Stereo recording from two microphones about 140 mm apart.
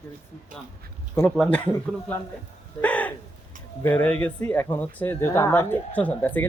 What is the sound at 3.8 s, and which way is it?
Speech, 10° left (ahead or behind).